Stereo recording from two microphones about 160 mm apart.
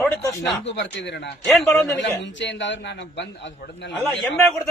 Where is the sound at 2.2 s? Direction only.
90° left.